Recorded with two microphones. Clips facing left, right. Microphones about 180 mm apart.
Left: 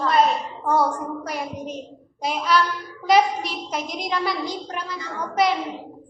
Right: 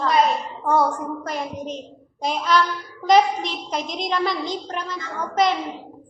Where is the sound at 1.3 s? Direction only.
10° left (ahead or behind).